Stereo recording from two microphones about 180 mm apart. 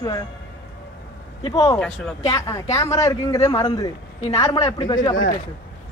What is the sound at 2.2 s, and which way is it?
A man's voice, 15° left (ahead or behind).